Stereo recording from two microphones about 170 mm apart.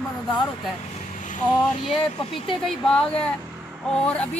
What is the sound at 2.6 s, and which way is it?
A woman's voice, centre (ahead or behind).